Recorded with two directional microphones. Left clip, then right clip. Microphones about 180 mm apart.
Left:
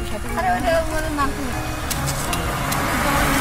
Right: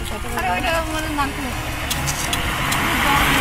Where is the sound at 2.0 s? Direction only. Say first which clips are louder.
Right 1 dB; 35° left (ahead or behind).